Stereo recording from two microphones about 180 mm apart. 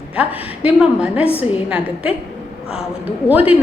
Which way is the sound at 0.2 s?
10° right (ahead or behind).